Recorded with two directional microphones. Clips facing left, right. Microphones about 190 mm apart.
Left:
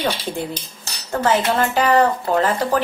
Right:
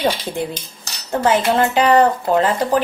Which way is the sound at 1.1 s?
20° right (ahead or behind).